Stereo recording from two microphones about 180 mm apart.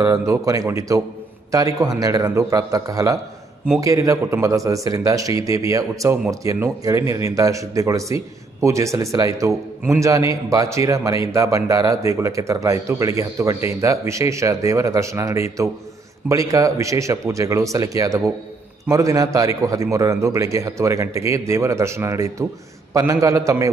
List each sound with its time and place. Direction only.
0.3 s a man's voice: 20° right (ahead or behind)